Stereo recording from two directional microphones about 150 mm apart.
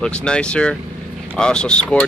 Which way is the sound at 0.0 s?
5° left (ahead or behind).